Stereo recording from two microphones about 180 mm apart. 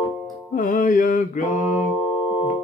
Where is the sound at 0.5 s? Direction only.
45° left (ahead or behind).